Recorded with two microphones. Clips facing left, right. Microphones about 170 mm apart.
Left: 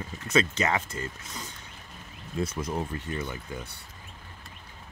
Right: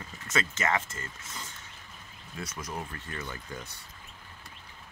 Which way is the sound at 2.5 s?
25° left (ahead or behind).